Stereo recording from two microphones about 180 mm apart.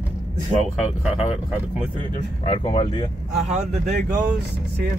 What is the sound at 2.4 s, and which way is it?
Speech, 30° left (ahead or behind).